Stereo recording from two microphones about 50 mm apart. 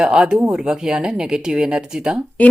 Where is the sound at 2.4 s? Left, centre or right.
Left.